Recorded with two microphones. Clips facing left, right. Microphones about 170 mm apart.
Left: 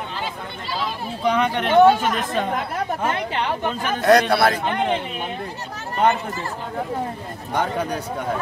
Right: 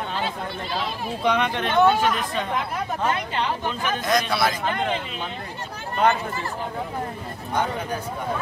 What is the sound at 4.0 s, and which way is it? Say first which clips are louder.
Speech: left 8 dB; 65° left (ahead or behind).